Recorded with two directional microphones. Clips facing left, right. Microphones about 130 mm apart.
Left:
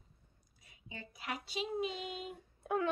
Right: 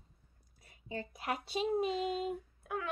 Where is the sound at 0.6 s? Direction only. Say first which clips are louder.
Right 9 dB; 45° right (ahead or behind).